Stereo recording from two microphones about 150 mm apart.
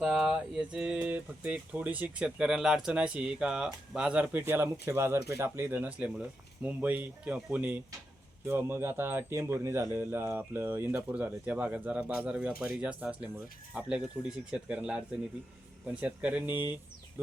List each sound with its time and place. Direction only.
0.0 s speech: 5° right (ahead or behind)